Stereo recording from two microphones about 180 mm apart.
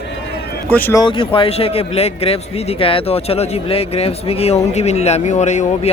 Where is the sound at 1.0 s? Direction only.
25° left (ahead or behind).